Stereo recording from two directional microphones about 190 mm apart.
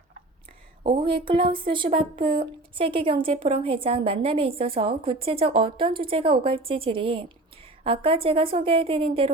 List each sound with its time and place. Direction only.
0.9 s a woman's voice: 25° right (ahead or behind)